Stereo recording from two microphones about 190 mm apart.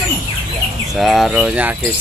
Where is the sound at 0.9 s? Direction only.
Centre (ahead or behind).